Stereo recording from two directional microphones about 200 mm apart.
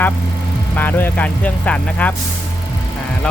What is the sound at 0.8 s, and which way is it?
Speech, 10° left (ahead or behind).